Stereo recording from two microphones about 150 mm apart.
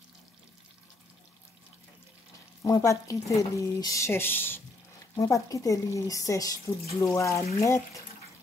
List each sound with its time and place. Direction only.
2.6 s speech: 20° left (ahead or behind)